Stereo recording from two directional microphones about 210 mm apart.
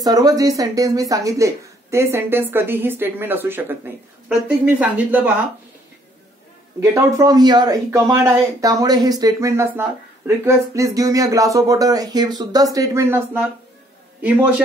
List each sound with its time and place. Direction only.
0.0 s speech: 20° right (ahead or behind)
6.8 s speech: 15° right (ahead or behind)